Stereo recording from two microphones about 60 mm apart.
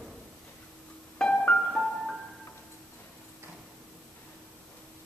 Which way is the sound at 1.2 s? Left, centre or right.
Centre.